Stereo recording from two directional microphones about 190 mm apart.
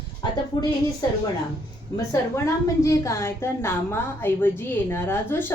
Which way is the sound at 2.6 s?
15° left (ahead or behind).